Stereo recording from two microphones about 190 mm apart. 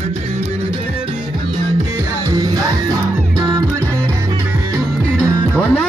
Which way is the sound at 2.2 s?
20° right (ahead or behind).